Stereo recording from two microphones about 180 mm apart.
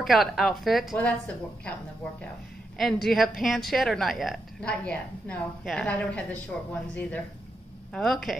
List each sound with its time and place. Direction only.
0.0 s a woman's voice: centre (ahead or behind)
2.8 s a woman's voice: centre (ahead or behind)